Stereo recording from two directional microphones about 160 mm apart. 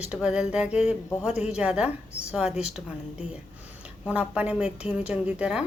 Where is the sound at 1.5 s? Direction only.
5° right (ahead or behind).